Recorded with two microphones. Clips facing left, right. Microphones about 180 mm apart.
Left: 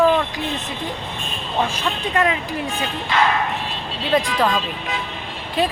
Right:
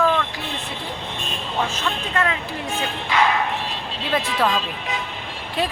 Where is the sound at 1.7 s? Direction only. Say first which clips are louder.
Left 3 dB; 15° left (ahead or behind).